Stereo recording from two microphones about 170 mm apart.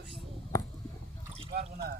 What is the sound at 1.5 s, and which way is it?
Water, 60° right (ahead or behind).